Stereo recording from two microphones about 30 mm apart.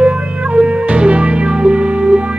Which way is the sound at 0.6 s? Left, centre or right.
Right.